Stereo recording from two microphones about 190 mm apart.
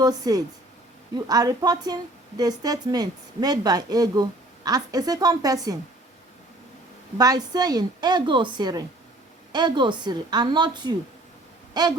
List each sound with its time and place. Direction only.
0.0 s a woman's voice: 20° right (ahead or behind)
7.2 s a woman's voice: 20° right (ahead or behind)
11.7 s a sound: 20° right (ahead or behind)